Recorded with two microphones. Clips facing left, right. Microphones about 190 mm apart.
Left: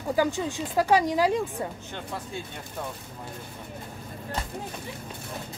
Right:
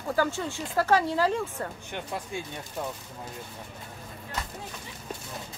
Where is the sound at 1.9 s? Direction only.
15° right (ahead or behind).